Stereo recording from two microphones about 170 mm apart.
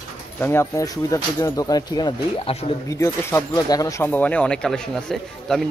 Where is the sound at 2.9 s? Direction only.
15° left (ahead or behind).